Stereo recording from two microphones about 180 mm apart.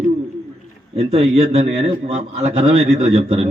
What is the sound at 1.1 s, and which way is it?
A man's voice, 35° right (ahead or behind).